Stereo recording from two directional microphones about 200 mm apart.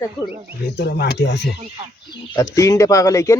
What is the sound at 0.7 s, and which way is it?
Speech, 55° left (ahead or behind).